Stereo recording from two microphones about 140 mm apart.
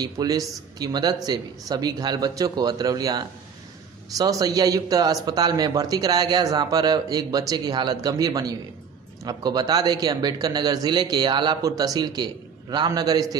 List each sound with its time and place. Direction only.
0.0 s speech: 25° right (ahead or behind)